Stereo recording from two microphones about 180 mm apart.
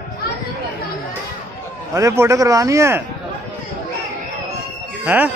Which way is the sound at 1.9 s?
15° right (ahead or behind).